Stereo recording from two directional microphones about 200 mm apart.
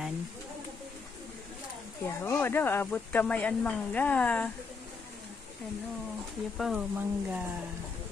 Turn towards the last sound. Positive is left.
turn(degrees=-10)  # may be behind; listen again after turning